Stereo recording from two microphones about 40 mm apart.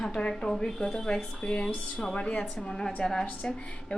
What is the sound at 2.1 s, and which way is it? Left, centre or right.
Speech, left.